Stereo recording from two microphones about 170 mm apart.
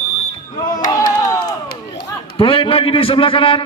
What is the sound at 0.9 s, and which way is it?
Crowd, 20° left (ahead or behind).